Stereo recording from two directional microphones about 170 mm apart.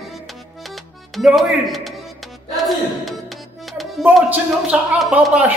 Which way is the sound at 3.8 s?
5° right (ahead or behind).